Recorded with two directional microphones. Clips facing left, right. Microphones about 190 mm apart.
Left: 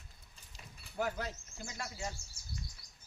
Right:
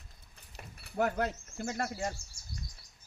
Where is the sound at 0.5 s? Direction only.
65° right (ahead or behind).